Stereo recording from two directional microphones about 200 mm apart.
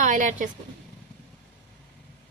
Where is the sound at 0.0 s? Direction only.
40° right (ahead or behind).